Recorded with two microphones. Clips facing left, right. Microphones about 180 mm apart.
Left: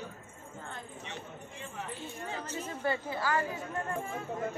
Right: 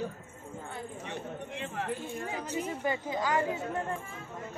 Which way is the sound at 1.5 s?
65° right (ahead or behind).